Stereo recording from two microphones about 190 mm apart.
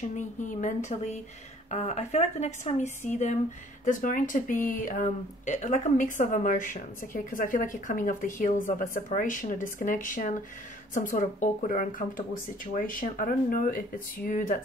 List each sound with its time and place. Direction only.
0.1 s a woman's voice: 40° left (ahead or behind)